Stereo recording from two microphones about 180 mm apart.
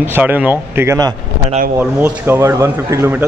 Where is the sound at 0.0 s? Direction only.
10° right (ahead or behind).